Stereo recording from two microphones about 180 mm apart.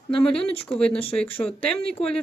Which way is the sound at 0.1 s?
30° left (ahead or behind).